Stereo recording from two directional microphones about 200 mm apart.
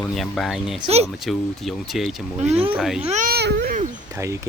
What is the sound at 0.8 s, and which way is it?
Speech, 30° right (ahead or behind).